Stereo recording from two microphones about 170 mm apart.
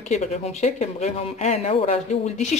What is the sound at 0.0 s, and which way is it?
Speech, 40° left (ahead or behind).